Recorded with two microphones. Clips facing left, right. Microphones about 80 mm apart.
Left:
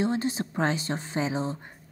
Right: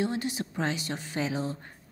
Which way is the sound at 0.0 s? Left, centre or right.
Left.